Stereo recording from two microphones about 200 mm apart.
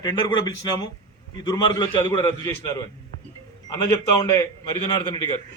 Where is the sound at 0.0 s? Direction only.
20° left (ahead or behind).